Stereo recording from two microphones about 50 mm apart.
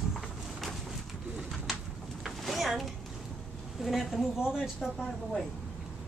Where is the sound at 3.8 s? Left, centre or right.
Centre.